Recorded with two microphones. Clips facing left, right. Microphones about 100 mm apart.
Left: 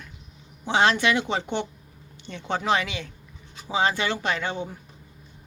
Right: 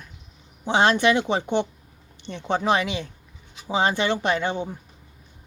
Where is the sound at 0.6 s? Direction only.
20° right (ahead or behind).